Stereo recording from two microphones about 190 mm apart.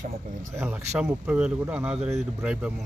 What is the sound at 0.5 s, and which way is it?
Speech, 15° right (ahead or behind).